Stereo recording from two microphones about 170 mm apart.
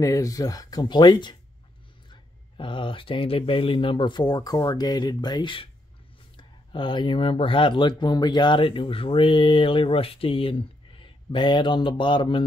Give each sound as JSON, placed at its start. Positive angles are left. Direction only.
{"t": 0.0, "sound": "speech", "side_deg": 20}